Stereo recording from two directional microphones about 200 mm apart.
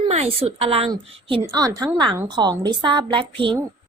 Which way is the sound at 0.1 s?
30° right (ahead or behind).